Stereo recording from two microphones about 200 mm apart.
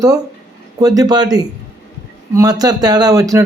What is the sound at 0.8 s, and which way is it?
Speech, 20° right (ahead or behind).